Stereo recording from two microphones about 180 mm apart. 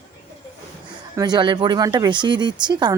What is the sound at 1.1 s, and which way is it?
Speech, 25° right (ahead or behind).